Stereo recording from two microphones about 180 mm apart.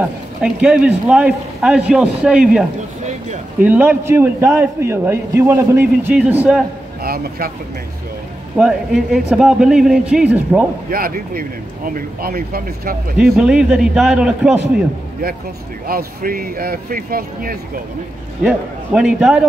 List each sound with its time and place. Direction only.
0.0 s speech: 5° right (ahead or behind)
3.6 s a man's voice: 10° right (ahead or behind)
7.0 s speech: 55° right (ahead or behind)
8.5 s speech: centre (ahead or behind)
10.9 s speech: 55° right (ahead or behind)
13.2 s speech: 5° right (ahead or behind)
15.9 s speech: 55° right (ahead or behind)
18.4 s speech: 5° right (ahead or behind)